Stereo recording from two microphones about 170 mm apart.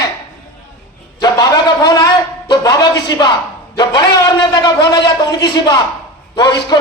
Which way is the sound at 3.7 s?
25° left (ahead or behind).